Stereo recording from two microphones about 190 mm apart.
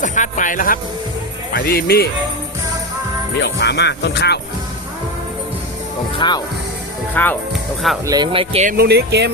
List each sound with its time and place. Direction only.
0.0 s speech: 40° left (ahead or behind)
3.4 s speech: 65° left (ahead or behind)
6.1 s speech: 20° left (ahead or behind)
7.1 s speech: 10° left (ahead or behind)
8.0 s speech: 20° right (ahead or behind)
8.6 s speech: 55° right (ahead or behind)